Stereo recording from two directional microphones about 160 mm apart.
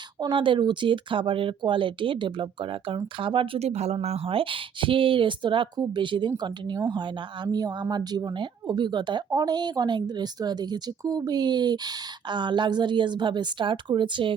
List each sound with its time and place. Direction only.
0.2 s speech: 30° right (ahead or behind)